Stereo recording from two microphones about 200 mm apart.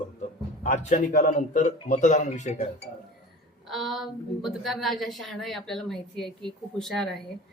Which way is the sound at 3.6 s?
Centre (ahead or behind).